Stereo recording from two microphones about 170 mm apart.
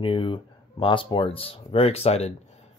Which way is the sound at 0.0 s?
30° left (ahead or behind).